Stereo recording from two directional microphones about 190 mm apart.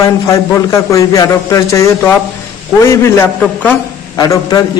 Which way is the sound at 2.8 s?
15° left (ahead or behind).